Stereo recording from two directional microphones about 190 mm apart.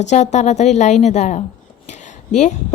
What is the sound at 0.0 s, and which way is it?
A woman's voice, 40° left (ahead or behind).